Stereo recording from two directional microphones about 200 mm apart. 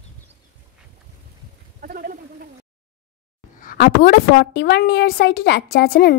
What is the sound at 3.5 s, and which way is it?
A woman's voice, 45° left (ahead or behind).